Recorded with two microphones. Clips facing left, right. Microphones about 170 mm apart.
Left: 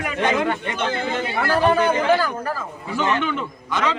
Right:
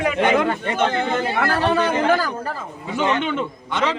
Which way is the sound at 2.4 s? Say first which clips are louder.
Left 1 dB; 20° right (ahead or behind).